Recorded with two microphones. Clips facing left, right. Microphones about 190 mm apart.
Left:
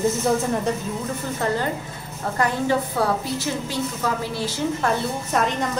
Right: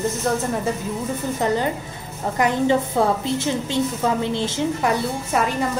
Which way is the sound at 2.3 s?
20° right (ahead or behind).